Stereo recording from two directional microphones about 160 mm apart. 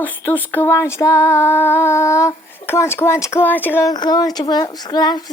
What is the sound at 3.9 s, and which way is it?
A woman's voice, 25° left (ahead or behind).